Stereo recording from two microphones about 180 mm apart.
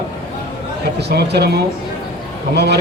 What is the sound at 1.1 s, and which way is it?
A man's voice, 65° right (ahead or behind).